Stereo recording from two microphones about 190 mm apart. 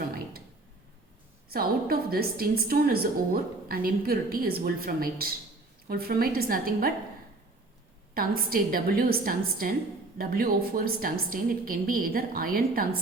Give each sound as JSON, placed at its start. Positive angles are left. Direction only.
{"t": 1.5, "sound": "a woman's voice", "side_deg": -55}
{"t": 8.1, "sound": "a woman's voice", "side_deg": -50}